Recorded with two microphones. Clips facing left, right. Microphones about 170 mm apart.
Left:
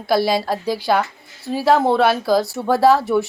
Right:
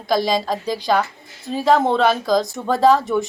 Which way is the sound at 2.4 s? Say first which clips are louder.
Left 1 dB; 20° right (ahead or behind).